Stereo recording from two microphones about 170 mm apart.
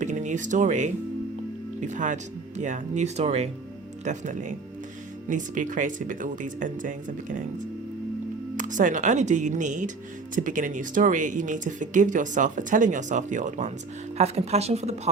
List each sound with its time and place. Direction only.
0.0 s speech: 45° right (ahead or behind)
8.5 s speech: 50° right (ahead or behind)